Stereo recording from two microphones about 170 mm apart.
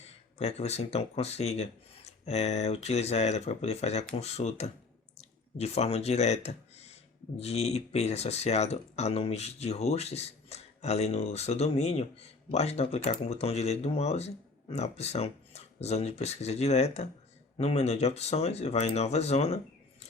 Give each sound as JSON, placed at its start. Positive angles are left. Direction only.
{"t": 0.3, "sound": "speech", "side_deg": 40}